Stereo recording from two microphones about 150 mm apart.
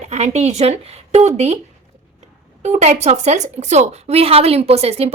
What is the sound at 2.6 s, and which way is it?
A woman's voice, 45° right (ahead or behind).